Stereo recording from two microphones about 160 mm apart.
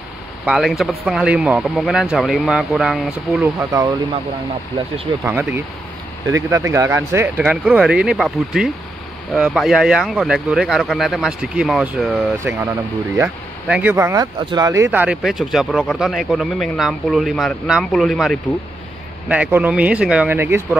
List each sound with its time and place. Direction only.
0.5 s speech: centre (ahead or behind)
3.5 s speech: 20° right (ahead or behind)
5.2 s speech: 15° right (ahead or behind)
14.9 s speech: 10° right (ahead or behind)
19.2 s speech: 10° right (ahead or behind)